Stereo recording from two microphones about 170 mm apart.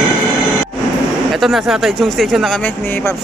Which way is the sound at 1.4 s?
Centre (ahead or behind).